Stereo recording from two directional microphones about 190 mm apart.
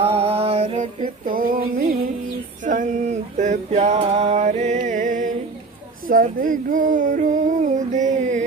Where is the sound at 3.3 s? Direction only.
40° right (ahead or behind).